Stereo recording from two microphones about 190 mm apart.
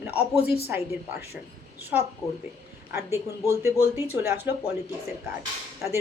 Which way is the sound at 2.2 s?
5° left (ahead or behind).